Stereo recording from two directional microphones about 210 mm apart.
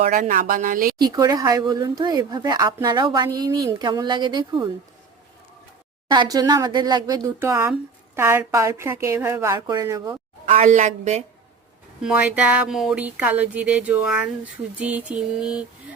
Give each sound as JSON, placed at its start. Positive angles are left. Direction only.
{"t": 0.0, "sound": "a woman's voice", "side_deg": -35}
{"t": 0.9, "sound": "speech", "side_deg": -20}
{"t": 6.1, "sound": "a woman's voice", "side_deg": -20}
{"t": 10.4, "sound": "a woman's voice", "side_deg": -35}
{"t": 12.0, "sound": "a woman's voice", "side_deg": -5}